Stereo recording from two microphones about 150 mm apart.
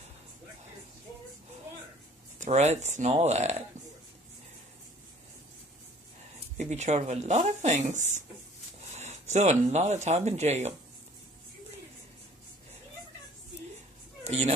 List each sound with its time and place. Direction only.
2.4 s speech: 50° right (ahead or behind)
6.6 s speech: 50° right (ahead or behind)
14.2 s a sound: 45° right (ahead or behind)